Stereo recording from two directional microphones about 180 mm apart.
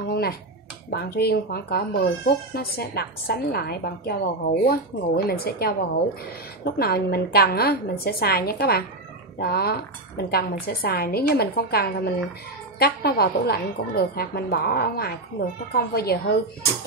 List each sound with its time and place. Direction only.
0.1 s finger snapping: 60° left (ahead or behind)
0.8 s speech: 60° left (ahead or behind)